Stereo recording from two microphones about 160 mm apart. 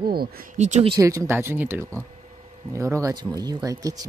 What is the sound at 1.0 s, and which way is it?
Speech, 20° right (ahead or behind).